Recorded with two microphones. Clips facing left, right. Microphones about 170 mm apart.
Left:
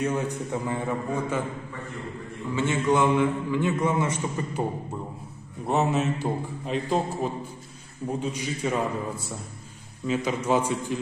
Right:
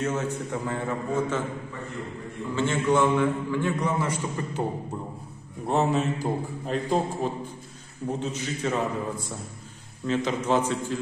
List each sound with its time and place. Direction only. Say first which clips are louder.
0.0 s a man's voice: left 1 dB; 15° left (ahead or behind)
2.5 s a man's voice: even; 15° left (ahead or behind)
5.7 s a man's voice: even; centre (ahead or behind)
8.1 s a man's voice: left 1 dB; 10° left (ahead or behind)